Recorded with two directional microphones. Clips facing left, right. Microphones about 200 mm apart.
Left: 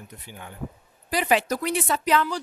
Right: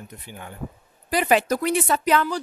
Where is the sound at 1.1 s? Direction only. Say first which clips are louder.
Right 3 dB; 50° right (ahead or behind).